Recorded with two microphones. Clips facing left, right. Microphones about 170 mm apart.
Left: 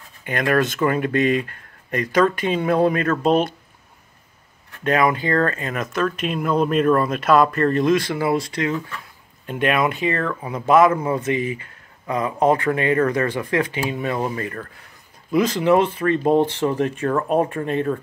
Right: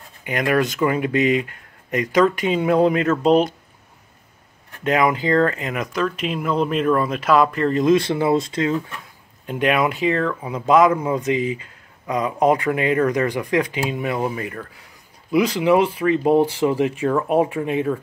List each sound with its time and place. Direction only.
0.2 s speech: 15° right (ahead or behind)
4.8 s speech: 15° right (ahead or behind)
9.5 s speech: 15° right (ahead or behind)